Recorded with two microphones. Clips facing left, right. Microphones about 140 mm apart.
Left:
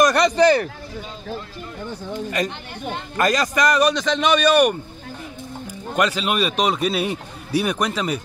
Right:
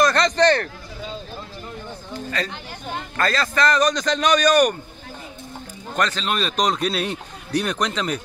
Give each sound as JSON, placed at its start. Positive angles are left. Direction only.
{"t": 0.0, "sound": "speech", "side_deg": 10}
{"t": 2.1, "sound": "a sound", "side_deg": 15}
{"t": 3.2, "sound": "a man's voice", "side_deg": 15}
{"t": 5.9, "sound": "a man's voice", "side_deg": 10}